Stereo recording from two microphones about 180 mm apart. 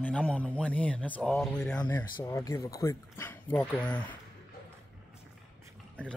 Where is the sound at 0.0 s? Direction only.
5° left (ahead or behind).